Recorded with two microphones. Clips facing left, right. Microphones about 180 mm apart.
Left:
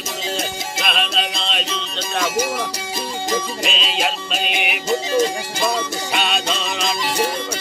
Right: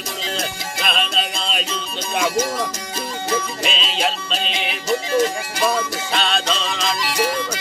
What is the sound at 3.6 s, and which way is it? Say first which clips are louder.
Music: even; centre (ahead or behind).